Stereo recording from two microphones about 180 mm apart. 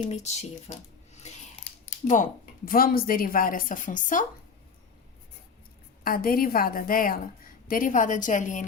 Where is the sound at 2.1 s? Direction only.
45° left (ahead or behind).